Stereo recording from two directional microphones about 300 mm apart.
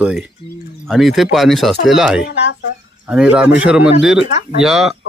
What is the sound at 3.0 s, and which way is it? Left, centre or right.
A man's voice, centre.